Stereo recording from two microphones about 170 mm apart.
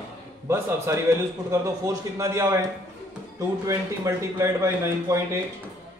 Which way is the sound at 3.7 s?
15° right (ahead or behind).